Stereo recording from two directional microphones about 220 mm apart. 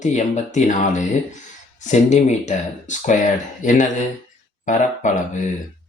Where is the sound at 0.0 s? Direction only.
35° left (ahead or behind).